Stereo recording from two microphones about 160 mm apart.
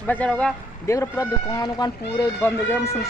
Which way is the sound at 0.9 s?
20° left (ahead or behind).